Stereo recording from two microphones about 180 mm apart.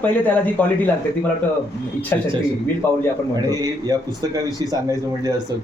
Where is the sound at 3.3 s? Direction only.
20° right (ahead or behind).